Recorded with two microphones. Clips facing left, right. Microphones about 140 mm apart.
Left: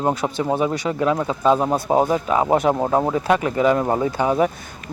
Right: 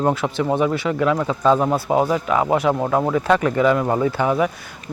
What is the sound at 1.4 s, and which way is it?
Speech, 10° left (ahead or behind).